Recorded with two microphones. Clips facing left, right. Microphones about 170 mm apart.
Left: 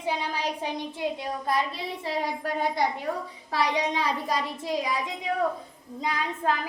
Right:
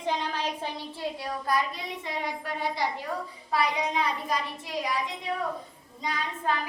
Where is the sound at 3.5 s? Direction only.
90° left.